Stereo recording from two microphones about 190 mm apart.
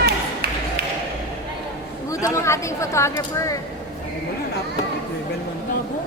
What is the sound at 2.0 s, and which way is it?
Speech, 15° left (ahead or behind).